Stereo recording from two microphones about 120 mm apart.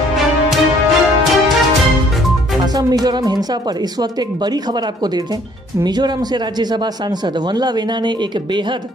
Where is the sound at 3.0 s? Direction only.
35° right (ahead or behind).